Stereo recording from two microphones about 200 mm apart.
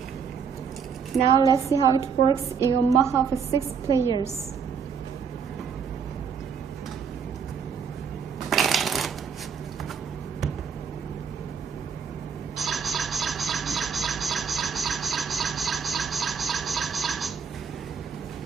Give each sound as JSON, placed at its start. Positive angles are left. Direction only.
{"t": 1.3, "sound": "a woman's voice", "side_deg": 20}
{"t": 1.7, "sound": "a woman's voice", "side_deg": -15}
{"t": 8.5, "sound": "shuffling cards", "side_deg": 0}
{"t": 12.5, "sound": "a sound", "side_deg": 0}